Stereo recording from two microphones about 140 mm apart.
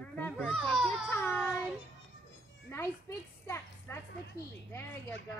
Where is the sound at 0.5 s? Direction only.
5° right (ahead or behind).